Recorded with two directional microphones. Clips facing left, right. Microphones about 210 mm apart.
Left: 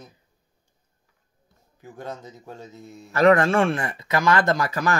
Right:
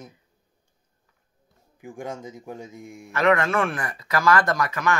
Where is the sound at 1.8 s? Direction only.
15° right (ahead or behind).